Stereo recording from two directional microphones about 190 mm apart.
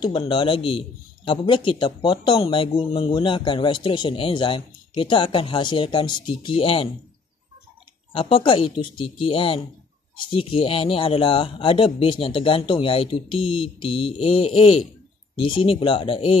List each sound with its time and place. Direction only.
0.0 s a man's voice: 25° left (ahead or behind)
8.1 s a man's voice: 25° left (ahead or behind)